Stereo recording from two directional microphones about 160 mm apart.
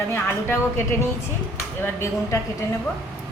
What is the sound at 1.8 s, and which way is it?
Speech, 15° left (ahead or behind).